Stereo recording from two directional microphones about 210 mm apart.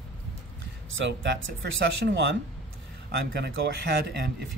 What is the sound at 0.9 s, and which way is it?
Speech, 60° right (ahead or behind).